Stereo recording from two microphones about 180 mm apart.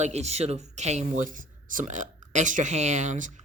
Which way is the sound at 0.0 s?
40° right (ahead or behind).